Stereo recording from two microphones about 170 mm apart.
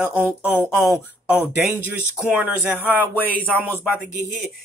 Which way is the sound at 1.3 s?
5° right (ahead or behind).